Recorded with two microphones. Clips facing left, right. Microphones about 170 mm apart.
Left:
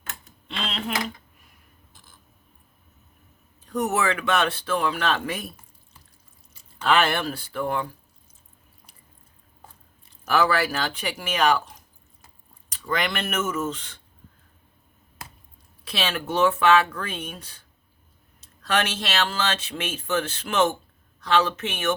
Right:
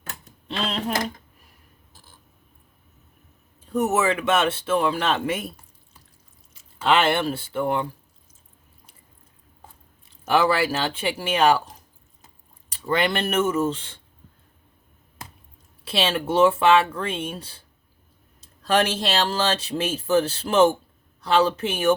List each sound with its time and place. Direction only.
0.0 s typewriter: 40° right (ahead or behind)
1.9 s a sound: 35° right (ahead or behind)
3.7 s speech: 25° right (ahead or behind)
6.5 s a sound: centre (ahead or behind)
6.8 s speech: 25° right (ahead or behind)
10.2 s speech: 25° right (ahead or behind)
15.8 s speech: 30° right (ahead or behind)